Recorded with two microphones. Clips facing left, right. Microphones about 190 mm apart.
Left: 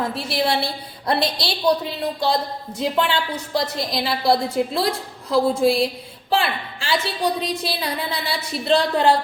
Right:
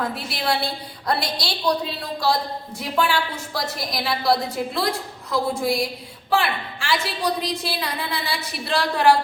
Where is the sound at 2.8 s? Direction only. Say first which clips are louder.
Left 2 dB; 20° left (ahead or behind).